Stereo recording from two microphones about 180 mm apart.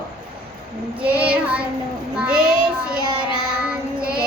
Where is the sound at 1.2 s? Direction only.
5° right (ahead or behind).